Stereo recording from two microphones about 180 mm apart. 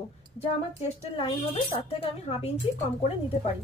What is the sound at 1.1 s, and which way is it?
A woman's voice, 30° left (ahead or behind).